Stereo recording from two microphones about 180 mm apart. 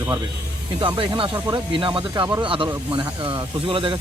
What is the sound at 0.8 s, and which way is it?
Speech, 30° right (ahead or behind).